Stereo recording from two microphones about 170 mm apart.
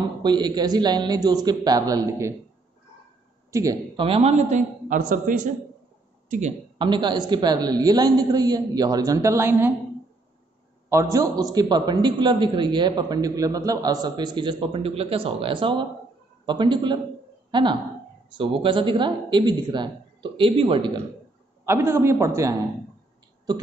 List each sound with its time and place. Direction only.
0.2 s a man's voice: 25° right (ahead or behind)
3.5 s a man's voice: 20° right (ahead or behind)
4.0 s a man's voice: 35° right (ahead or behind)
6.8 s a man's voice: 25° right (ahead or behind)
10.9 s a man's voice: 15° right (ahead or behind)
21.6 s a man's voice: 15° right (ahead or behind)